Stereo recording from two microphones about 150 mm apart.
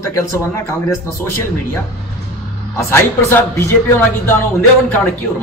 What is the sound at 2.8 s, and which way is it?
Speech, 15° left (ahead or behind).